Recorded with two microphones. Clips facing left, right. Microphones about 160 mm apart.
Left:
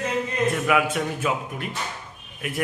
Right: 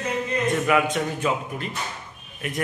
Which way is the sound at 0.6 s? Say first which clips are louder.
Right 1 dB; 5° left (ahead or behind).